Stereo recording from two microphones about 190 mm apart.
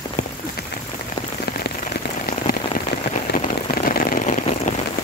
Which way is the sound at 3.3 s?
50° left (ahead or behind).